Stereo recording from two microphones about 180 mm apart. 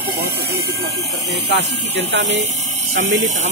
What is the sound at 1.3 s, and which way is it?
Speech, 75° right (ahead or behind).